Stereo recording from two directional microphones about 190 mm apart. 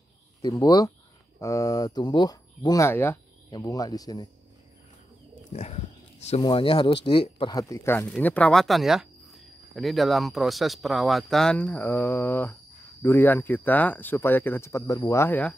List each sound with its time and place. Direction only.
0.4 s speech: 20° left (ahead or behind)
5.5 s speech: 35° left (ahead or behind); by 15.5 s 10° left (ahead or behind)